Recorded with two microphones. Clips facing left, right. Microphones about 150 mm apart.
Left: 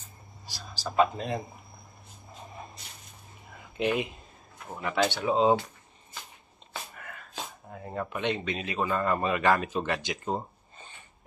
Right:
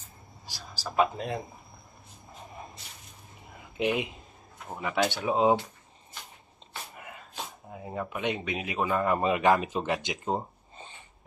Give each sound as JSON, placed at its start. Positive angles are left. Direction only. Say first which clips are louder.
{"t": 0.7, "sound": "speech", "louder": "left 1 dB", "side_deg": -5}
{"t": 3.7, "sound": "speech", "louder": "even", "side_deg": -15}
{"t": 7.0, "sound": "a sound", "louder": "right 1 dB", "side_deg": -20}
{"t": 7.7, "sound": "speech", "louder": "even", "side_deg": -5}